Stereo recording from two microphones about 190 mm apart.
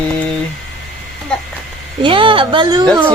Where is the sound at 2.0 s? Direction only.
25° right (ahead or behind).